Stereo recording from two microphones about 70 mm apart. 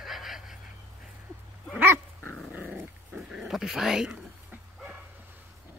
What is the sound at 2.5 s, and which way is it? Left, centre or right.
Dog, right.